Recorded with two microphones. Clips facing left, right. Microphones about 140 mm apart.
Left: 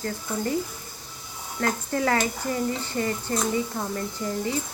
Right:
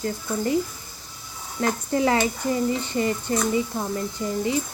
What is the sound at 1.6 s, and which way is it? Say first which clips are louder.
Speech: right 3 dB; 20° right (ahead or behind).